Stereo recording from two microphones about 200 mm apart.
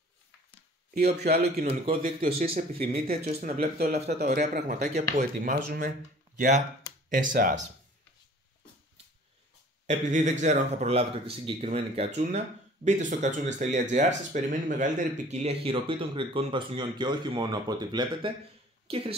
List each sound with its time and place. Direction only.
1.2 s speech: 50° right (ahead or behind)
1.6 s speech: 40° right (ahead or behind)
7.1 s speech: 40° right (ahead or behind)
9.8 s a woman's voice: 35° right (ahead or behind)